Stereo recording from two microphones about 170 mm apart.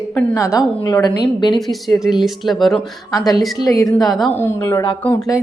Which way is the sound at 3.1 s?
20° left (ahead or behind).